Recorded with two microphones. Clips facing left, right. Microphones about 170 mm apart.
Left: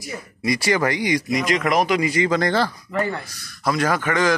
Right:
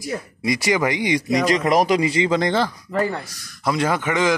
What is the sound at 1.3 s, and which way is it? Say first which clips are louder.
A man's voice: right 4 dB; 35° right (ahead or behind).